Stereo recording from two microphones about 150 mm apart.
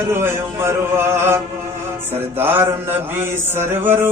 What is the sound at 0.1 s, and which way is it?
Speech, 15° right (ahead or behind).